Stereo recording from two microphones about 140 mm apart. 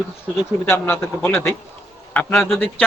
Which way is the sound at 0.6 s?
15° left (ahead or behind).